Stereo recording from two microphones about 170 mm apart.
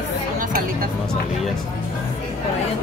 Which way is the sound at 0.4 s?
55° right (ahead or behind).